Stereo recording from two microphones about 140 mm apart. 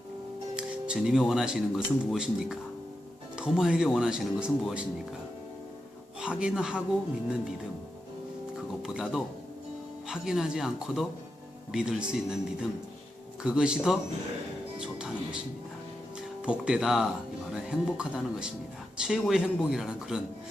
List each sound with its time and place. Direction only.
0.5 s speech: 5° right (ahead or behind)
6.1 s speech: 5° right (ahead or behind)
8.8 s speech: 5° right (ahead or behind)
16.4 s speech: 5° right (ahead or behind)